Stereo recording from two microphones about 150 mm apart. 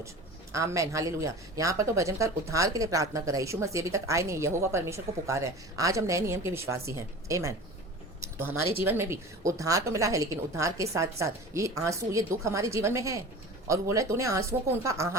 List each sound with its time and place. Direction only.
0.5 s speech: 20° right (ahead or behind)